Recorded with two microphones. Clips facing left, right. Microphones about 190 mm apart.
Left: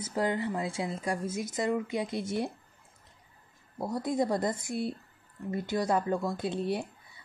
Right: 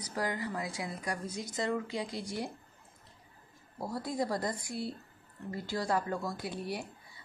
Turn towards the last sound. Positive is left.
turn(degrees=25)  # may be behind; listen again after turning